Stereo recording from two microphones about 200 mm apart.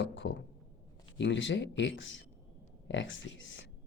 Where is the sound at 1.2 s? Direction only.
65° left (ahead or behind).